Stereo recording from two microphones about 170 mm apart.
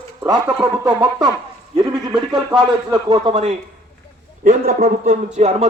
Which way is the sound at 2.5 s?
25° right (ahead or behind).